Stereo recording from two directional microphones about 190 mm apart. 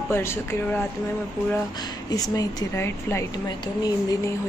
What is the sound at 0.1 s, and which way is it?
Speech, 15° left (ahead or behind).